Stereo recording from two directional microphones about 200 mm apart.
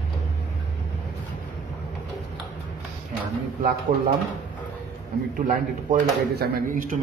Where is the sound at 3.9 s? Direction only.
45° right (ahead or behind).